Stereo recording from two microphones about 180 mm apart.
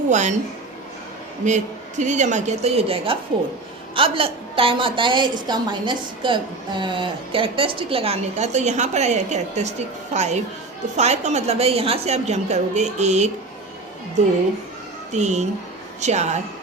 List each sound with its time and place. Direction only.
0.1 s a woman's voice: 40° right (ahead or behind)
1.5 s a woman's voice: 40° right (ahead or behind)
15.1 s a woman's voice: 40° right (ahead or behind)